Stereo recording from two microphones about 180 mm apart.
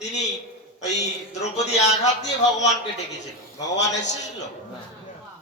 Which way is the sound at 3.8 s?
40° left (ahead or behind).